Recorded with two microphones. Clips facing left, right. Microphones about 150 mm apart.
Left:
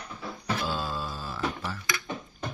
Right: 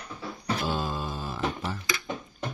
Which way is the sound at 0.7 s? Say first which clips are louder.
Right 2 dB; 15° right (ahead or behind).